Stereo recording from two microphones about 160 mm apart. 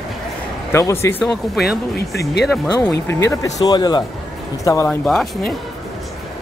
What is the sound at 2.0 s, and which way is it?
Speech, 85° left.